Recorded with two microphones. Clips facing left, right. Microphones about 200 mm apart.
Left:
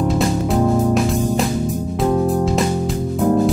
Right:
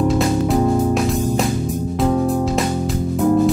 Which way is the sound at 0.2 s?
Centre (ahead or behind).